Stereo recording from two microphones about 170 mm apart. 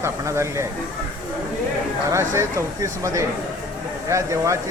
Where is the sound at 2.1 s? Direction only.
15° right (ahead or behind).